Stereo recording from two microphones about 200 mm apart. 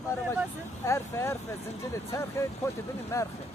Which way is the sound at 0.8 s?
15° left (ahead or behind).